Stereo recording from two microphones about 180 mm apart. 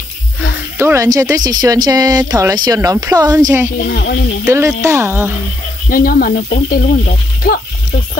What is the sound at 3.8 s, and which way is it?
Speech, 60° left (ahead or behind).